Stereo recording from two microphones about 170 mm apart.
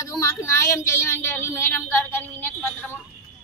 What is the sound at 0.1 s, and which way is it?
A woman's voice, 20° left (ahead or behind).